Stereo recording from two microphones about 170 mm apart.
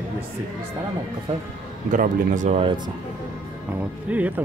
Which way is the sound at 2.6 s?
30° right (ahead or behind).